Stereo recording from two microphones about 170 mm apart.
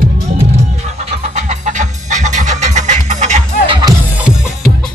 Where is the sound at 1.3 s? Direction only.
45° right (ahead or behind).